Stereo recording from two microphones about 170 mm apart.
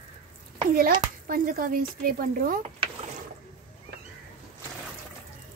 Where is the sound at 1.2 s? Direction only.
55° right (ahead or behind).